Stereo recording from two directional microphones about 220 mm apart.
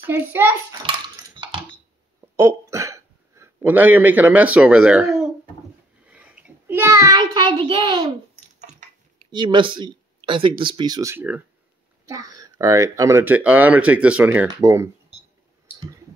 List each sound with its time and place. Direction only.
0.0 s speech: 10° right (ahead or behind)
0.8 s dishes: 20° right (ahead or behind)
2.3 s speech: 15° right (ahead or behind)
6.0 s child singing: 5° right (ahead or behind)
9.3 s speech: 20° right (ahead or behind)